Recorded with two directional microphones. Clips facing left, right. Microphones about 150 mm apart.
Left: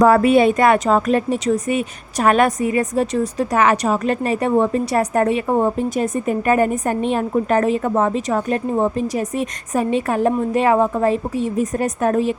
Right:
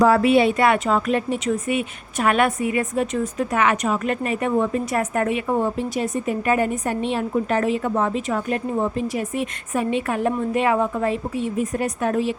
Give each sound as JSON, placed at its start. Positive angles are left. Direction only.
{"t": 0.0, "sound": "a woman's voice", "side_deg": 45}